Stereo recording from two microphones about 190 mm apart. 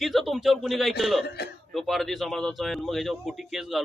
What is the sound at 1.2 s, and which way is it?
Speech, 60° left (ahead or behind).